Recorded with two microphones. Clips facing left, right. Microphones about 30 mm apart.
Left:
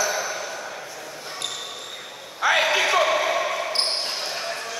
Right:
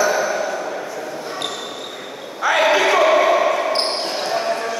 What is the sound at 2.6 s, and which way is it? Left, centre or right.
Basketball bounce, right.